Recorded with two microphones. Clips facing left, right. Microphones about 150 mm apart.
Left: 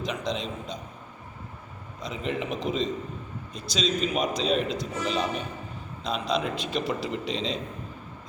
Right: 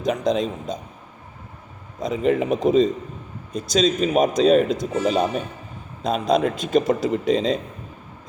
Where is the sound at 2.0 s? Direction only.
45° right (ahead or behind).